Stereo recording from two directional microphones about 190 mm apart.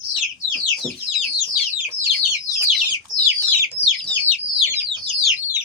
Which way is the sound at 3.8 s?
35° left (ahead or behind).